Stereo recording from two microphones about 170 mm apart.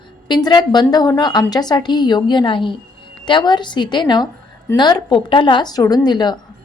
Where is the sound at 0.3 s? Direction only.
25° left (ahead or behind).